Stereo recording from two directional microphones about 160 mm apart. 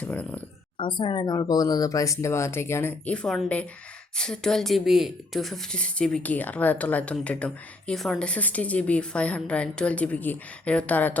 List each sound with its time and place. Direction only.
0.0 s speech: 10° left (ahead or behind)
0.8 s speech: 30° left (ahead or behind); by 11.2 s 10° left (ahead or behind)